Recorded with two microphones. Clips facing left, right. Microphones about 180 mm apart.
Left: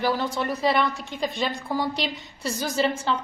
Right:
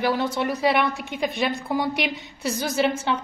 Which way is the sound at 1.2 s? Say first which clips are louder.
Right 2 dB; 15° right (ahead or behind).